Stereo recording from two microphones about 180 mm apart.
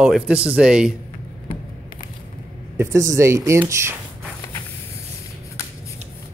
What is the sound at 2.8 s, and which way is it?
Speech, 15° right (ahead or behind).